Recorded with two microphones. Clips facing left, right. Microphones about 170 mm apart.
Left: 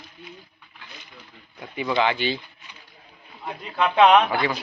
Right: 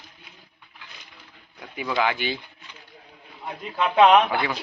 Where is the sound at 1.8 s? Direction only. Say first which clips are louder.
Left 2 dB; 5° right (ahead or behind).